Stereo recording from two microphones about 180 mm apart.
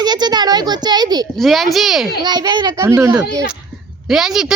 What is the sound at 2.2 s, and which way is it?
Speech, 25° right (ahead or behind).